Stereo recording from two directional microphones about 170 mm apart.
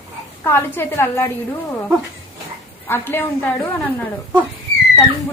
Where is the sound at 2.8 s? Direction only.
15° left (ahead or behind).